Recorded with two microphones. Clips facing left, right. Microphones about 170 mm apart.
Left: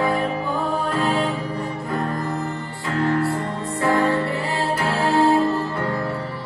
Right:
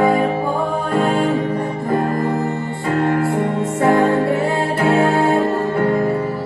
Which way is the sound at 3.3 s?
20° right (ahead or behind).